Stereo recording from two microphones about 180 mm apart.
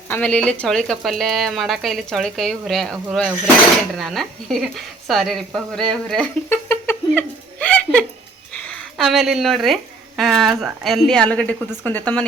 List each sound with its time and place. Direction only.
0.1 s speech: 5° left (ahead or behind)
8.5 s a sound: 5° left (ahead or behind)
10.2 s speech: centre (ahead or behind)